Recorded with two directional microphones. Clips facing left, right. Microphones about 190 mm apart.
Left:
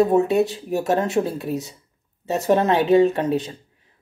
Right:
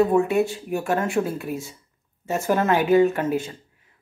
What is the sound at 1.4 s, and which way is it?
Speech, 40° left (ahead or behind).